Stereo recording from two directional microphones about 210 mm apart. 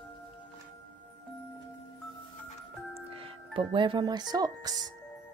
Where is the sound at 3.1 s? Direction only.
25° right (ahead or behind).